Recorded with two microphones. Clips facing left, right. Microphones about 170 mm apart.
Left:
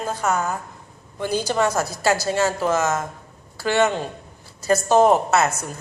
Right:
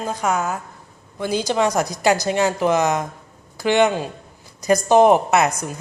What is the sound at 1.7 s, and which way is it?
A woman's voice, 15° right (ahead or behind).